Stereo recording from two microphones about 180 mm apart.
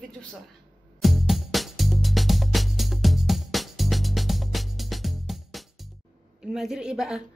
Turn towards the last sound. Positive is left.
turn(degrees=-5)  # may be behind; listen again after turning